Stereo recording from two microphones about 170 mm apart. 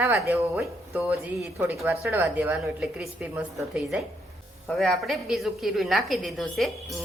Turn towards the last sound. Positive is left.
turn(degrees=0)  # may be behind; listen again after turning